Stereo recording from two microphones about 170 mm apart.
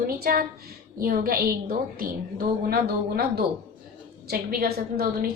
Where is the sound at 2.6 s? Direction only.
65° right (ahead or behind).